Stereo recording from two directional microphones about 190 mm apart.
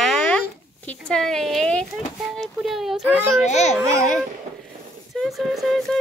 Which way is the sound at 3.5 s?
35° left (ahead or behind).